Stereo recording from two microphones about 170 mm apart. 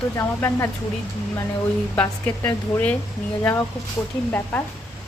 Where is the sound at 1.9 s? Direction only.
10° left (ahead or behind).